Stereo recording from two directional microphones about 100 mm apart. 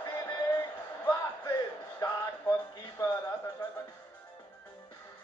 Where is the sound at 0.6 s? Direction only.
40° left (ahead or behind).